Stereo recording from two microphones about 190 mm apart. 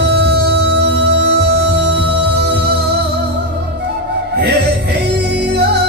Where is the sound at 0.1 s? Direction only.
60° right (ahead or behind).